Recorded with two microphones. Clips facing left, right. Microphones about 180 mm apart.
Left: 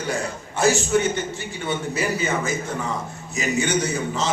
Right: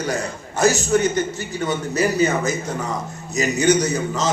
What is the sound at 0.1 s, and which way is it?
A man's voice, 40° right (ahead or behind).